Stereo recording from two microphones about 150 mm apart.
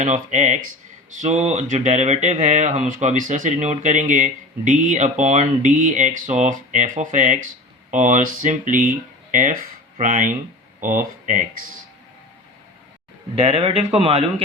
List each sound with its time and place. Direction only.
0.0 s speech: 50° right (ahead or behind)
13.3 s speech: 40° right (ahead or behind)